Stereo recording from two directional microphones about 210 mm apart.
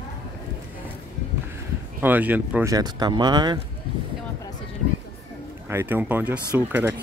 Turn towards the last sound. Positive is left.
turn(degrees=-10)  # may be behind; listen again after turning